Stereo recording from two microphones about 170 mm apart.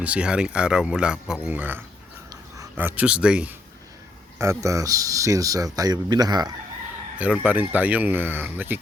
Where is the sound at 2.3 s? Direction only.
15° right (ahead or behind).